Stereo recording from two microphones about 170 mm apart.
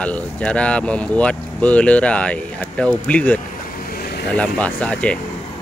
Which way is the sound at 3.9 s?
65° left (ahead or behind).